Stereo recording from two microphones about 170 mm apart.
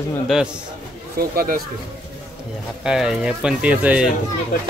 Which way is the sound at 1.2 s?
60° right (ahead or behind).